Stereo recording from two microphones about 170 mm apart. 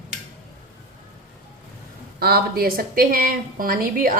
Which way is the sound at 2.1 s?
65° right (ahead or behind).